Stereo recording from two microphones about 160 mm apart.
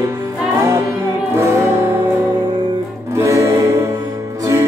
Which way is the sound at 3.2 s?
20° right (ahead or behind).